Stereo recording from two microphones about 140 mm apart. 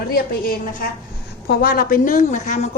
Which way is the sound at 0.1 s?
90° left.